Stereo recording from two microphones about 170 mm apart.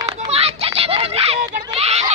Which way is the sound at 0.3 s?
35° right (ahead or behind).